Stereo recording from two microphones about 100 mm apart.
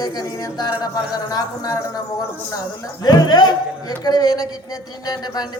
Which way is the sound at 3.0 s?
45° left (ahead or behind).